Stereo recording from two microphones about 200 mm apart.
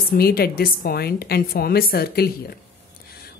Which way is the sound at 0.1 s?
50° left (ahead or behind).